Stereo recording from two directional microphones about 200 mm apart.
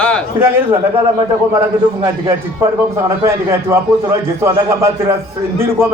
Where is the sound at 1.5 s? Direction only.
15° right (ahead or behind).